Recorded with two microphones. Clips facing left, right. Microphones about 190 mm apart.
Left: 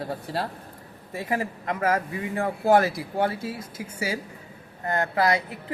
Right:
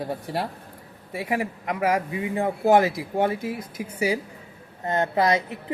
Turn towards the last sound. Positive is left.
turn(degrees=-20)  # may be behind; listen again after turning